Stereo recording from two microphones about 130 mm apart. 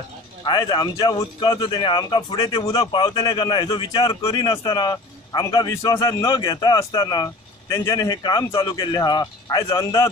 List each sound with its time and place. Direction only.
0.5 s speech: 35° left (ahead or behind)
4.2 s a man's voice: 25° left (ahead or behind)